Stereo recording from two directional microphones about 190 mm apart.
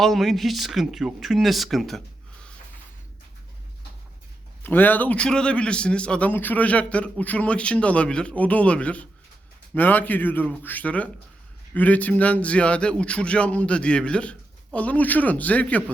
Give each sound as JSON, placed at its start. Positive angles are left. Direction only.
{"t": 0.0, "sound": "speech", "side_deg": 0}
{"t": 4.6, "sound": "a man's voice", "side_deg": 10}